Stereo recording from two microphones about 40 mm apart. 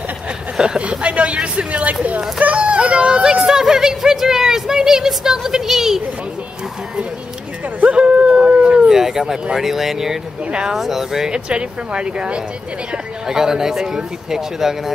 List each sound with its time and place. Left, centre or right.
0.6 s speech: right
0.8 s speech: right
2.4 s a sound: right; by 6.0 s centre
8.0 s howl: right
8.8 s speech: centre